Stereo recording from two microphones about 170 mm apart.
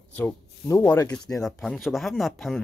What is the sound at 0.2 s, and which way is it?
Speech, 10° left (ahead or behind).